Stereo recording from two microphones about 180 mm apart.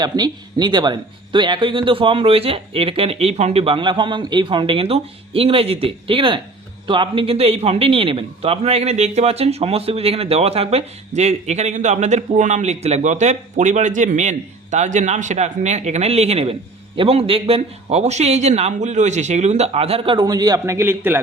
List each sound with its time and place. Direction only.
0.0 s a man's voice: 20° right (ahead or behind)